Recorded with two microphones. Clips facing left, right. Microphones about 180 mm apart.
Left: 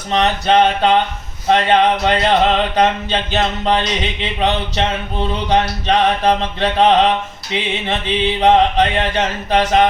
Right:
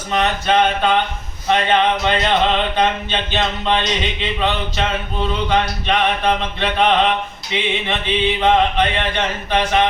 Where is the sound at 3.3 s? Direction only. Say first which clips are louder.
Left 2 dB; 40° left (ahead or behind).